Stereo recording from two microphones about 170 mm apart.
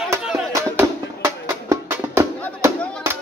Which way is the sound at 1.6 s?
15° right (ahead or behind).